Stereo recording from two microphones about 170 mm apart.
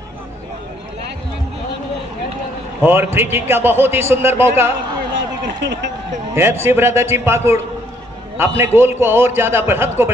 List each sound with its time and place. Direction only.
2.8 s a man's voice: 15° right (ahead or behind)
5.1 s a sound: 90° right
6.3 s a man's voice: 15° right (ahead or behind)